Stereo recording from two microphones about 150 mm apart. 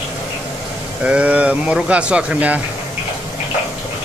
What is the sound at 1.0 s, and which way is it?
Speech, 10° right (ahead or behind).